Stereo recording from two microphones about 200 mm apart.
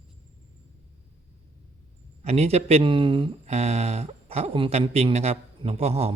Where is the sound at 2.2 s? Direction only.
30° right (ahead or behind).